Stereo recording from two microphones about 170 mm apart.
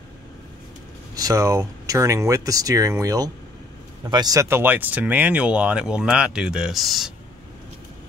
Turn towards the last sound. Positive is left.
turn(degrees=0)  # may be behind; listen again after turning